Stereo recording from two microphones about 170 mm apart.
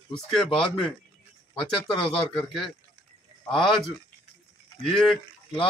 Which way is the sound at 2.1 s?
5° left (ahead or behind).